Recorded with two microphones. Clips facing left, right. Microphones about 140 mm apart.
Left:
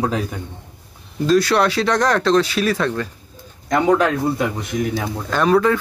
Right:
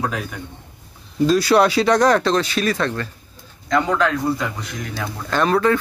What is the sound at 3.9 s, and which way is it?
Speech, 20° left (ahead or behind).